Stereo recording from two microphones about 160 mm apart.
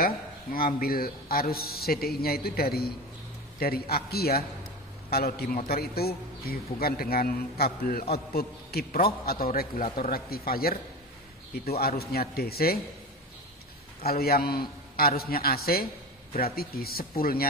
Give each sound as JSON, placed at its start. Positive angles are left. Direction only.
{"t": 0.0, "sound": "a man's voice", "side_deg": 65}
{"t": 14.0, "sound": "a man's voice", "side_deg": 70}